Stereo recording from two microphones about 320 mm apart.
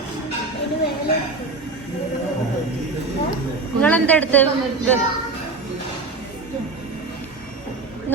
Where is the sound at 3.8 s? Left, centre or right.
Centre.